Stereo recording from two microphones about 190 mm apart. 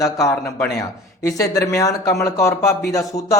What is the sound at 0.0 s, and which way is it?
Speech, 15° left (ahead or behind).